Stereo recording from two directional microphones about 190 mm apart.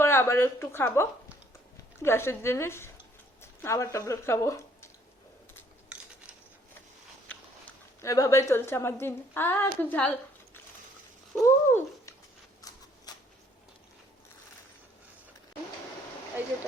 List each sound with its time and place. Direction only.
0.0 s a woman's voice: 10° left (ahead or behind)
8.0 s a woman's voice: 15° left (ahead or behind)
11.4 s cat: 15° left (ahead or behind)
13.1 s a sound: 20° left (ahead or behind)
16.4 s speech: 10° right (ahead or behind)